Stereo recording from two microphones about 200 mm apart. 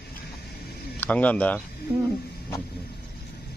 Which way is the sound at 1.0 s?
5° left (ahead or behind).